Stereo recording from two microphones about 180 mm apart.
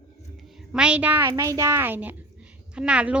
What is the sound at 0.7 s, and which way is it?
A woman's voice, 5° right (ahead or behind).